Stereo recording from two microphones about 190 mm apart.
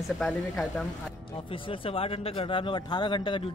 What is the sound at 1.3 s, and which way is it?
Speech, 25° left (ahead or behind).